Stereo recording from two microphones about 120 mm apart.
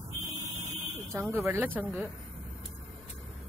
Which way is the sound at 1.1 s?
20° right (ahead or behind).